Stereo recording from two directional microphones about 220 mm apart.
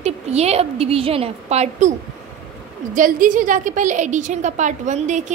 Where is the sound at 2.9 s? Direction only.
35° right (ahead or behind).